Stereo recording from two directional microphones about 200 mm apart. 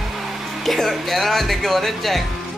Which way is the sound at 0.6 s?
Centre (ahead or behind).